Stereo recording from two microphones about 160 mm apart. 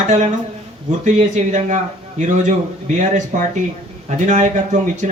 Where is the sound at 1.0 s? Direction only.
45° right (ahead or behind).